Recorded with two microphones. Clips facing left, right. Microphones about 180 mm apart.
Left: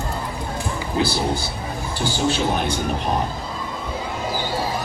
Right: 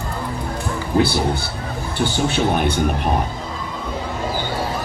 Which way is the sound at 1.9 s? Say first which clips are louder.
Right 2 dB; 60° right (ahead or behind).